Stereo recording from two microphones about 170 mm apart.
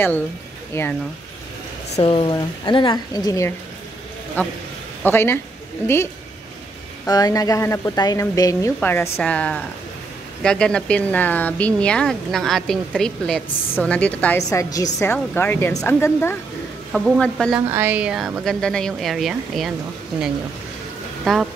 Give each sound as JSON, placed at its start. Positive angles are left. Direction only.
{"t": 0.8, "sound": "speech", "side_deg": 15}
{"t": 2.0, "sound": "speech", "side_deg": 35}
{"t": 5.0, "sound": "speech", "side_deg": 15}
{"t": 7.1, "sound": "speech", "side_deg": 20}
{"t": 14.5, "sound": "speech", "side_deg": 20}
{"t": 17.7, "sound": "speech", "side_deg": -10}
{"t": 21.2, "sound": "speech", "side_deg": 0}